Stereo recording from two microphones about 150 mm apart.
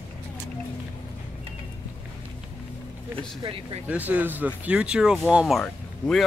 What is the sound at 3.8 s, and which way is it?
Speech, 10° right (ahead or behind).